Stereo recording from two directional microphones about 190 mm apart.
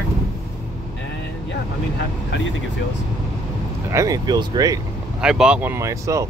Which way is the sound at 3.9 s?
15° right (ahead or behind).